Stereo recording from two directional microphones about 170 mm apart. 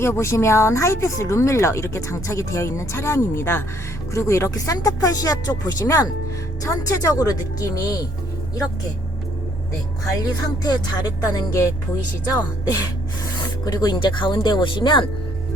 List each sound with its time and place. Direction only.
0.0 s speech: 15° left (ahead or behind)
10.1 s speech: 20° left (ahead or behind)